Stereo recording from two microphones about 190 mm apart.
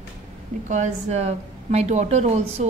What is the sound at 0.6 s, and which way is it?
A woman's voice, 40° right (ahead or behind).